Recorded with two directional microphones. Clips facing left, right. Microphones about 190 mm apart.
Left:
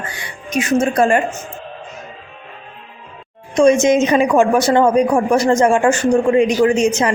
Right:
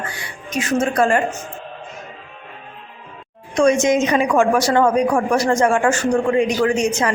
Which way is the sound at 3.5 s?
25° left (ahead or behind).